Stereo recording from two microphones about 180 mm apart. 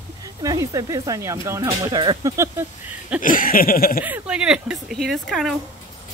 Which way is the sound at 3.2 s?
50° left (ahead or behind).